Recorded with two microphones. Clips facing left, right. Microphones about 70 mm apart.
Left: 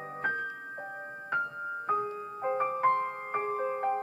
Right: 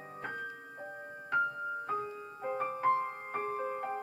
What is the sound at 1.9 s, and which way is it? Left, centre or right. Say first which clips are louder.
Music: left 6 dB; left.